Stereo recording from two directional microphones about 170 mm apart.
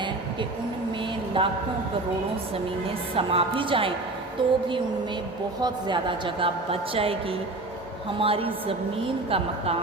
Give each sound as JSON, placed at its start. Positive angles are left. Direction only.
{"t": 1.4, "sound": "a woman's voice", "side_deg": -30}
{"t": 3.2, "sound": "a woman's voice", "side_deg": -35}
{"t": 4.4, "sound": "music", "side_deg": -30}
{"t": 5.5, "sound": "a woman's voice", "side_deg": -25}